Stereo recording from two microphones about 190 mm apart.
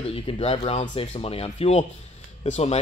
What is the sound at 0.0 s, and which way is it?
Speech, 30° left (ahead or behind).